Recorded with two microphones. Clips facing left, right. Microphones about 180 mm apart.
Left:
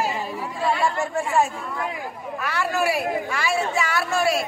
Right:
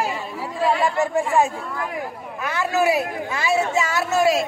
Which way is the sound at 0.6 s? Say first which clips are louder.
Right 3 dB; 15° right (ahead or behind).